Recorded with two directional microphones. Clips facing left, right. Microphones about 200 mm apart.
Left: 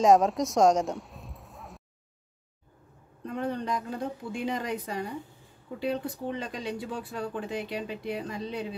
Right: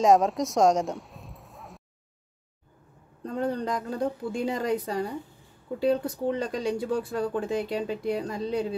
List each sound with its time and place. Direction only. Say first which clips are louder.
0.0 s speech: even; centre (ahead or behind)
3.3 s speech: right 3 dB; 35° right (ahead or behind)